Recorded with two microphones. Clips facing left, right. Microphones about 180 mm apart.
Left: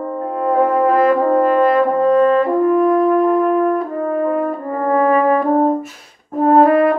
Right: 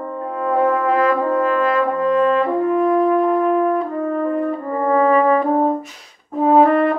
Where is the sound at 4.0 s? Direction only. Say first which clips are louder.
Left 2 dB; 50° left (ahead or behind).